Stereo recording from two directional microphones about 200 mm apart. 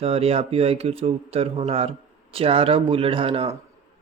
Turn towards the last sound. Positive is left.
turn(degrees=-30)  # may be behind; listen again after turning